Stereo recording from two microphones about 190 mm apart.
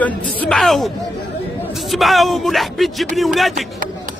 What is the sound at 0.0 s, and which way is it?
A man's voice, 5° left (ahead or behind).